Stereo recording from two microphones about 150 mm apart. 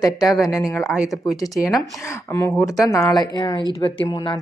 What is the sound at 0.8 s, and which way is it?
Speech, 5° right (ahead or behind).